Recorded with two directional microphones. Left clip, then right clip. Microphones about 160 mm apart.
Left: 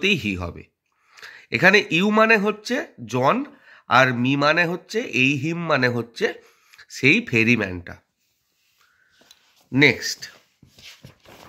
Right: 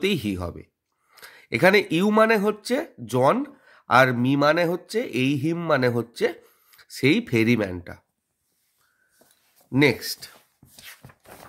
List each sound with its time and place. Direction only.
0.0 s speech: 40° right (ahead or behind)
9.7 s speech: 45° right (ahead or behind)